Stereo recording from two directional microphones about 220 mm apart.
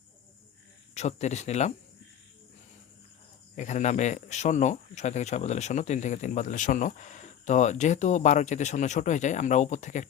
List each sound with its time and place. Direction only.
0.9 s speech: 30° left (ahead or behind)
3.5 s speech: 35° left (ahead or behind)